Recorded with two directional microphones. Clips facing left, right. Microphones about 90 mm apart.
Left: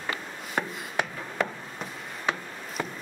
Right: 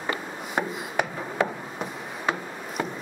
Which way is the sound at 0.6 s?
20° right (ahead or behind).